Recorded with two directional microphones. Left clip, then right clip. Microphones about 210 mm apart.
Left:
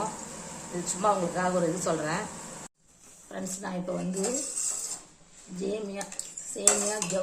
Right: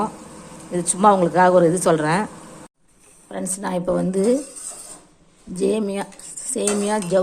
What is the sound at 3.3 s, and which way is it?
Speech, 25° right (ahead or behind).